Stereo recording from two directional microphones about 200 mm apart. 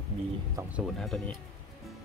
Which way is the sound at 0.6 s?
5° right (ahead or behind).